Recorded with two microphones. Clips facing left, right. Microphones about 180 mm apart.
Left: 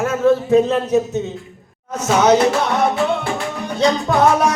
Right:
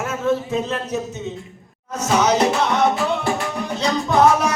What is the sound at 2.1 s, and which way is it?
Music, centre (ahead or behind).